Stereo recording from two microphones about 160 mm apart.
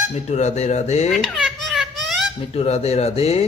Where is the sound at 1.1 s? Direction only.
Centre (ahead or behind).